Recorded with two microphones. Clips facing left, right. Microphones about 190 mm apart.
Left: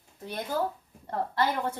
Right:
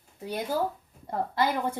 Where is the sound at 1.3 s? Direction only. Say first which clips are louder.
Right 1 dB; 15° right (ahead or behind).